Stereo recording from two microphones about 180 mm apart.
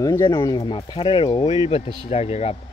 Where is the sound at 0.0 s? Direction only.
20° left (ahead or behind).